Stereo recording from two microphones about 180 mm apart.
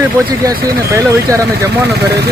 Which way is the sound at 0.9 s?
15° right (ahead or behind).